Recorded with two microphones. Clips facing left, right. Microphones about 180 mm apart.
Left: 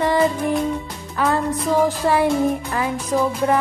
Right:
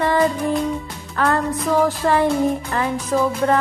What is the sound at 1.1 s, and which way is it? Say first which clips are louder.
Music: even; 5° left (ahead or behind).